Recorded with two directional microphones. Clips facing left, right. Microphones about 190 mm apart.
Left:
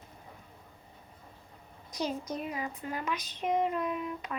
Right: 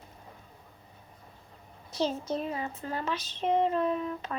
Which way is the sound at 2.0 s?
30° right (ahead or behind).